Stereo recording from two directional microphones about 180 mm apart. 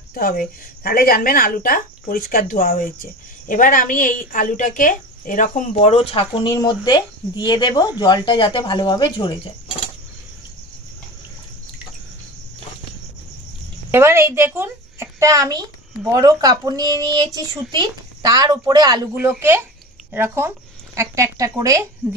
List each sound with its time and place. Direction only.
0.1 s a woman's voice: 55° left (ahead or behind); by 9.5 s 25° left (ahead or behind)
13.9 s a woman's voice: 15° right (ahead or behind)